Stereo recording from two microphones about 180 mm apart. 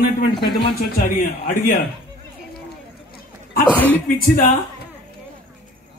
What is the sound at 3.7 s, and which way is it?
Speech, 10° left (ahead or behind).